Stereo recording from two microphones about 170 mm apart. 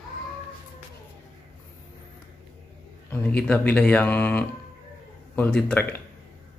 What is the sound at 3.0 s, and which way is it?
Speech, 10° left (ahead or behind).